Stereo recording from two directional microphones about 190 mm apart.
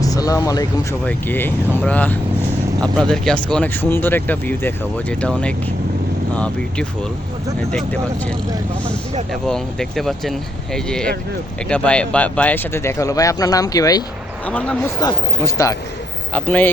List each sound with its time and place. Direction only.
0.0 s speech: 20° left (ahead or behind)
9.3 s speech: centre (ahead or behind); by 14.0 s 20° left (ahead or behind)
14.4 s speech: 5° left (ahead or behind)
14.9 s speech: 20° left (ahead or behind)